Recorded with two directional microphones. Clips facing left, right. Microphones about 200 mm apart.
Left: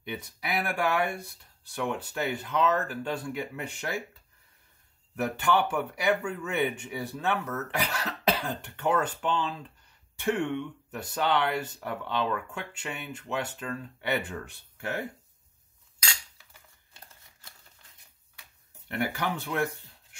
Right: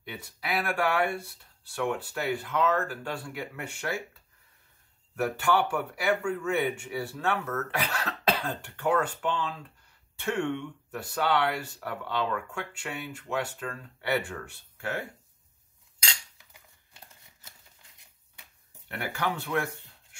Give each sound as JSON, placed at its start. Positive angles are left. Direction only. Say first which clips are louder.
{"t": 0.0, "sound": "speech", "louder": "left 2 dB", "side_deg": 20}
{"t": 5.1, "sound": "speech", "louder": "even", "side_deg": 20}
{"t": 16.0, "sound": "cutlery", "louder": "even", "side_deg": -20}
{"t": 18.9, "sound": "speech", "louder": "left 2 dB", "side_deg": 15}